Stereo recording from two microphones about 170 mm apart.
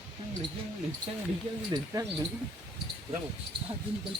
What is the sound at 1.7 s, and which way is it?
Speech, 20° right (ahead or behind).